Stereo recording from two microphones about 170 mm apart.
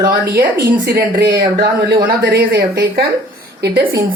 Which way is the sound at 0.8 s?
70° right (ahead or behind).